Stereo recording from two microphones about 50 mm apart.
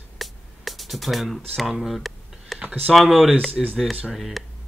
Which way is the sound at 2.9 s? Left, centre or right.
Centre.